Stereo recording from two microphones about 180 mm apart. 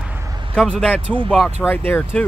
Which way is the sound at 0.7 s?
5° left (ahead or behind).